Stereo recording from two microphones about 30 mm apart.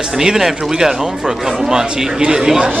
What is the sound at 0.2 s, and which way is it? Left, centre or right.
Speech, centre.